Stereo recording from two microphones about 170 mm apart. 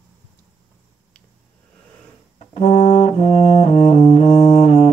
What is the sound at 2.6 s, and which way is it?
Brass instrument, 40° left (ahead or behind).